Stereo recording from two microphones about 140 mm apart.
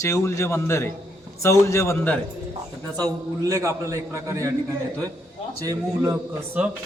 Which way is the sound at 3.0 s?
25° right (ahead or behind).